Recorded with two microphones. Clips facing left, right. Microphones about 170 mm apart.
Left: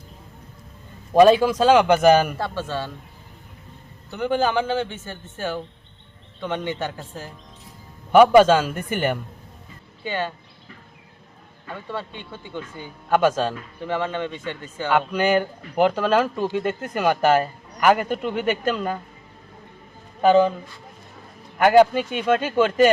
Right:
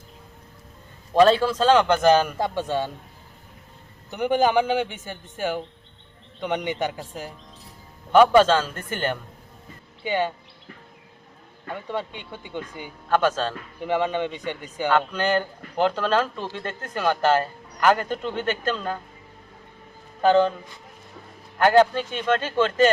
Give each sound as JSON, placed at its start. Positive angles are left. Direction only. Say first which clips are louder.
{"t": 1.1, "sound": "speech", "louder": "left 3 dB", "side_deg": 15}
{"t": 2.4, "sound": "a man's voice", "louder": "right 2 dB", "side_deg": -15}
{"t": 4.1, "sound": "a man's voice", "louder": "right 1 dB", "side_deg": -15}
{"t": 8.1, "sound": "speech", "louder": "left 3 dB", "side_deg": 10}
{"t": 10.0, "sound": "a man's voice", "louder": "right 3 dB", "side_deg": -15}
{"t": 11.7, "sound": "a man's voice", "louder": "right 2 dB", "side_deg": -15}
{"t": 13.1, "sound": "speech", "louder": "left 3 dB", "side_deg": 10}
{"t": 13.8, "sound": "a man's voice", "louder": "right 2 dB", "side_deg": -15}
{"t": 14.8, "sound": "speech", "louder": "left 2 dB", "side_deg": 10}
{"t": 20.2, "sound": "speech", "louder": "left 2 dB", "side_deg": 10}
{"t": 21.6, "sound": "speech", "louder": "left 3 dB", "side_deg": 10}